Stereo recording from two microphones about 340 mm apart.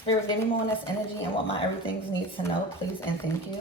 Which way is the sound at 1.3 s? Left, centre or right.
Centre.